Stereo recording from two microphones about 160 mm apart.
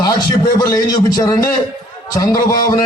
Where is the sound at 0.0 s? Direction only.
20° left (ahead or behind).